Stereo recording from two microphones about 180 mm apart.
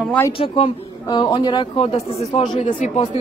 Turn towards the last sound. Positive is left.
turn(degrees=40)  # may be behind; listen again after turning